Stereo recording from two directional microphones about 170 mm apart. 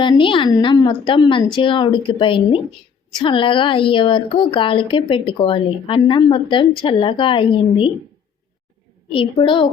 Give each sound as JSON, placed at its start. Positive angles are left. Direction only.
{"t": 0.0, "sound": "a woman's voice", "side_deg": 30}
{"t": 9.1, "sound": "a woman's voice", "side_deg": 30}